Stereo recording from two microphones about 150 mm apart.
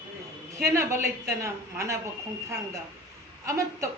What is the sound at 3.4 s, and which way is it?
Speech, 20° right (ahead or behind).